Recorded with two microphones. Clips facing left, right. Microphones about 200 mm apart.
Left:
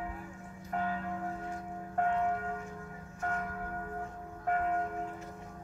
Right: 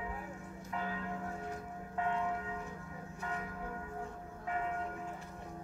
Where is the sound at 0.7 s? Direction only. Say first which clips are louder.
Left 6 dB; 45° left (ahead or behind).